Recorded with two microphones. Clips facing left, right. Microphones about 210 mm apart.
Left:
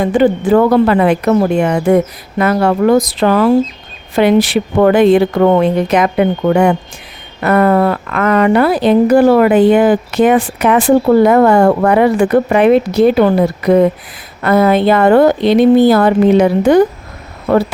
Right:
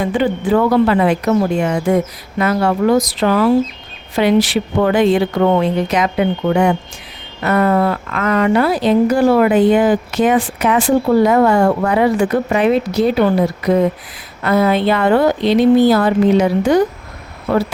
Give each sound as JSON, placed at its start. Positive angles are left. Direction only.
{"t": 0.0, "sound": "a woman's voice", "side_deg": 45}